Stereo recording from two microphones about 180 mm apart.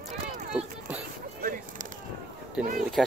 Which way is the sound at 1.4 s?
50° right (ahead or behind).